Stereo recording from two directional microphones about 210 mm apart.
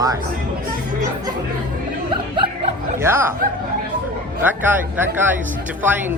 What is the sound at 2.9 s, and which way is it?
Speech, 10° right (ahead or behind).